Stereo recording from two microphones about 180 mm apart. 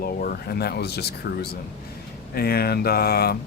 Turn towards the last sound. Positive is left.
turn(degrees=60)  # may be behind; listen again after turning